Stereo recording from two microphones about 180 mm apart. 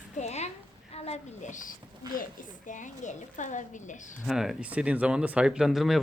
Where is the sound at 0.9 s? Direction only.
35° left (ahead or behind).